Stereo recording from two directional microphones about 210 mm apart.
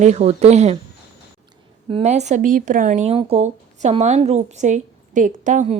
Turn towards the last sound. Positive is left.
turn(degrees=-35)  # may be behind; listen again after turning